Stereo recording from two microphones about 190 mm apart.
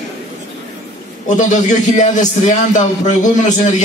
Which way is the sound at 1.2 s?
40° left (ahead or behind).